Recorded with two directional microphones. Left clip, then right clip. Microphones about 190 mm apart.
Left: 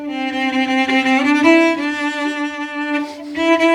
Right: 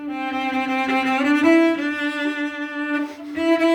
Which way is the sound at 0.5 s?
35° left (ahead or behind).